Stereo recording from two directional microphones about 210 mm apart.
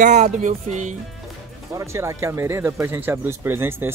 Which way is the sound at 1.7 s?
15° right (ahead or behind).